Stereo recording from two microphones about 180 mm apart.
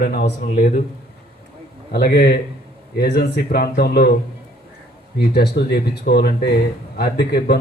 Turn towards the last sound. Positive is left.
turn(degrees=60)  # may be behind; listen again after turning